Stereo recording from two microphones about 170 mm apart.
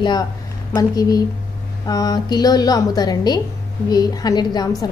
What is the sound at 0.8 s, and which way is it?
A woman's voice, 20° left (ahead or behind).